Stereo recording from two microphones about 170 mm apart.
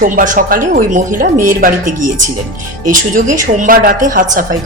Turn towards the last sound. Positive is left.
turn(degrees=-50)  # may be behind; listen again after turning